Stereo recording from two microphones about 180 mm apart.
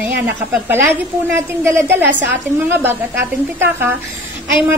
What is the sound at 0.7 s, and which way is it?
A woman's voice, 15° right (ahead or behind).